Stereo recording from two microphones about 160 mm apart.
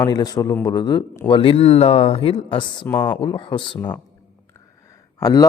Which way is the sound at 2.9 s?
10° left (ahead or behind).